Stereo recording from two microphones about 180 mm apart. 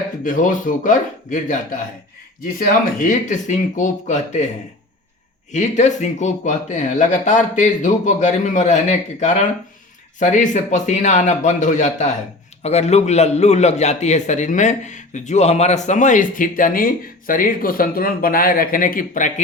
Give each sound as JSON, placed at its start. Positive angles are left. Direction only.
{"t": 0.3, "sound": "a man's voice", "side_deg": 45}
{"t": 3.0, "sound": "a man's voice", "side_deg": 45}
{"t": 5.5, "sound": "a man's voice", "side_deg": 40}